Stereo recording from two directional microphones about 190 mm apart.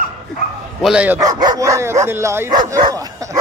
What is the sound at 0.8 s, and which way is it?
Speech, 5° right (ahead or behind).